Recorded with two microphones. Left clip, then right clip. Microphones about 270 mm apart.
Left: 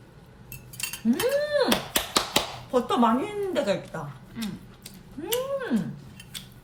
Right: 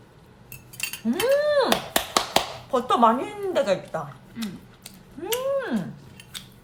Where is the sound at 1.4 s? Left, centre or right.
Centre.